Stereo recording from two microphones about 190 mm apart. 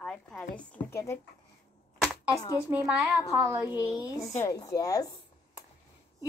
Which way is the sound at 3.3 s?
15° right (ahead or behind).